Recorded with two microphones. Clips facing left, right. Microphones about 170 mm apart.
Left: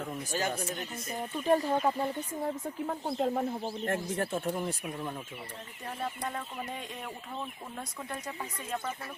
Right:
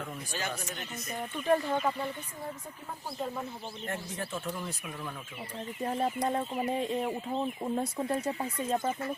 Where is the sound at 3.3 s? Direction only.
55° left (ahead or behind).